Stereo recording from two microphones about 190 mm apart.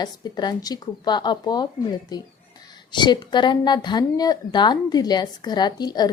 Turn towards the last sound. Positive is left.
turn(degrees=20)  # may be behind; listen again after turning